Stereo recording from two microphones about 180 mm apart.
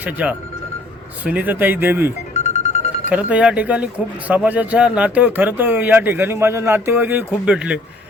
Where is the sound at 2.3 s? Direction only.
40° left (ahead or behind).